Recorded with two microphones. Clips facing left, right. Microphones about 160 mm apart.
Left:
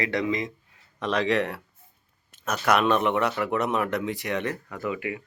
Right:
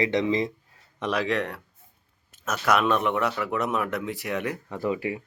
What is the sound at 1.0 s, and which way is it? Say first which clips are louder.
Speech: left 1 dB; 10° right (ahead or behind).